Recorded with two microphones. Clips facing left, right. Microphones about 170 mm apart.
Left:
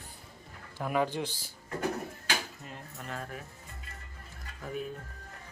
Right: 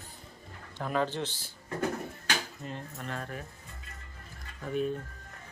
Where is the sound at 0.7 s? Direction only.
10° left (ahead or behind).